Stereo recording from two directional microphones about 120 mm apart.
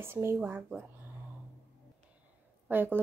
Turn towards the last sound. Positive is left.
turn(degrees=-15)  # may be behind; listen again after turning